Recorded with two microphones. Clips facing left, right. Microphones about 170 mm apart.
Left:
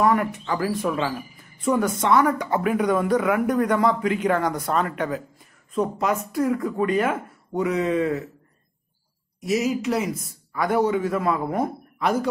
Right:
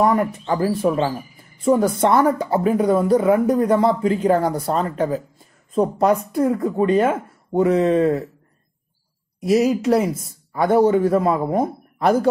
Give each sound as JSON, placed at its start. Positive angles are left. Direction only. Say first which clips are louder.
{"t": 0.2, "sound": "speech", "louder": "right 5 dB", "side_deg": -30}
{"t": 9.5, "sound": "a man's voice", "louder": "right 6 dB", "side_deg": -35}